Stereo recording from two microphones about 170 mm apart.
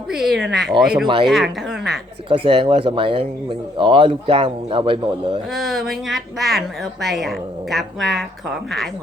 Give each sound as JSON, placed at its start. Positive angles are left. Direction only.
{"t": 0.1, "sound": "speech", "side_deg": -5}
{"t": 1.0, "sound": "speech", "side_deg": -25}
{"t": 1.3, "sound": "speech", "side_deg": 0}
{"t": 2.3, "sound": "speech", "side_deg": -30}
{"t": 5.5, "sound": "speech", "side_deg": 0}